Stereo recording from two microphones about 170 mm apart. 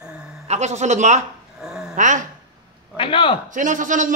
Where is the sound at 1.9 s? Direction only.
50° right (ahead or behind).